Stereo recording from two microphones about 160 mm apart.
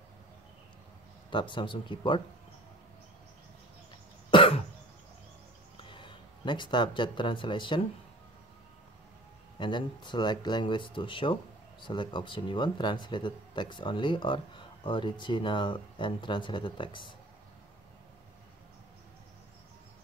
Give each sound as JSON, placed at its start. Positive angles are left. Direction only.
{"t": 1.3, "sound": "speech", "side_deg": 30}
{"t": 4.3, "sound": "cough", "side_deg": 30}
{"t": 5.8, "sound": "speech", "side_deg": 30}
{"t": 9.6, "sound": "speech", "side_deg": 30}